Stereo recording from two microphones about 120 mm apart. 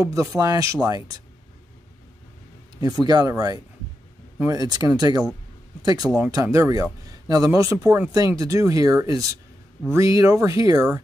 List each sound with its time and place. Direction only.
0.0 s speech: 25° right (ahead or behind)
2.8 s speech: 35° right (ahead or behind)